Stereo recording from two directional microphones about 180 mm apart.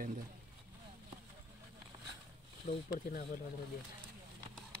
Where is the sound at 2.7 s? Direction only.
45° left (ahead or behind).